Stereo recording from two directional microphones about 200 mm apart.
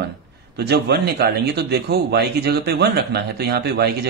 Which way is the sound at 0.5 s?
55° right (ahead or behind).